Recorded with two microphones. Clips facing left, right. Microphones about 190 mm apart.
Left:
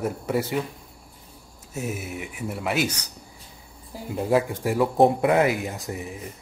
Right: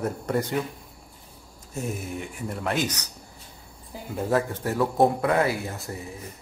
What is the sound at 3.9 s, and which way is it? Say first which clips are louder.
A man's voice: left 3 dB; centre (ahead or behind).